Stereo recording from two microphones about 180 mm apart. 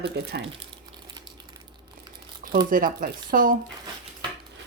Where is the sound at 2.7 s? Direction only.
50° right (ahead or behind).